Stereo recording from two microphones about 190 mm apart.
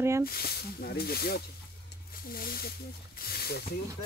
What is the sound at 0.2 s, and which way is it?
Speech, 55° left (ahead or behind).